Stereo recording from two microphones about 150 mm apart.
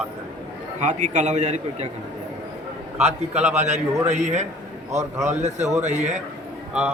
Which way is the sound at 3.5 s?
50° right (ahead or behind).